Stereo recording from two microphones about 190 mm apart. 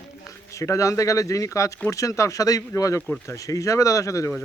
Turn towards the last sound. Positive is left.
turn(degrees=15)  # may be behind; listen again after turning